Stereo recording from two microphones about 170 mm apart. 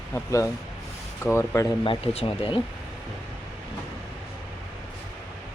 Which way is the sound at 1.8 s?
30° left (ahead or behind).